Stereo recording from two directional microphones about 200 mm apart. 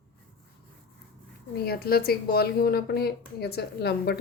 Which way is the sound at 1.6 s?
50° left (ahead or behind).